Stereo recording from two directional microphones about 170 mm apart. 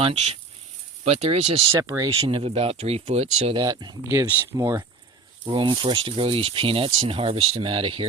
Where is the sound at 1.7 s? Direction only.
20° right (ahead or behind).